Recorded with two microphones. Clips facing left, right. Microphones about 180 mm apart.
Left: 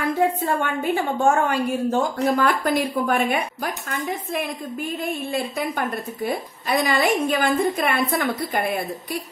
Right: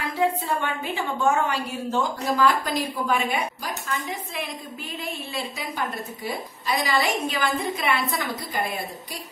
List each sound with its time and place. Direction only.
0.2 s a woman's voice: 50° left (ahead or behind)